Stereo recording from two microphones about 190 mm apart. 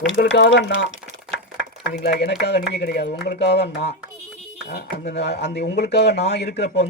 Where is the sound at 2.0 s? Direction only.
60° left (ahead or behind).